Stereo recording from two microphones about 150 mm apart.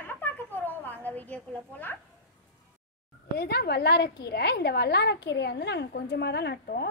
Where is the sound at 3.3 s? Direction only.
90° left.